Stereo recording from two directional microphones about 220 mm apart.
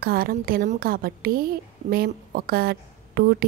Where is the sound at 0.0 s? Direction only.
40° right (ahead or behind).